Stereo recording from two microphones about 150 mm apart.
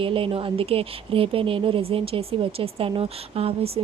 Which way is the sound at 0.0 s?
35° right (ahead or behind).